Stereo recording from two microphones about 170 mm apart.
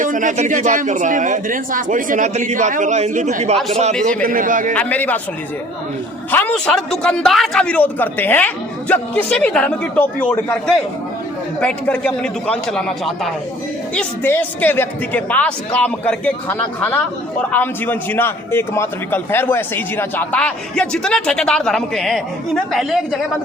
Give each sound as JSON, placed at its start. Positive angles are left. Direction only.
{"t": 0.0, "sound": "a man's voice", "side_deg": -50}
{"t": 4.7, "sound": "a man's voice", "side_deg": 10}
{"t": 6.3, "sound": "a man's voice", "side_deg": 10}
{"t": 11.6, "sound": "a man's voice", "side_deg": 5}
{"t": 13.9, "sound": "a man's voice", "side_deg": 10}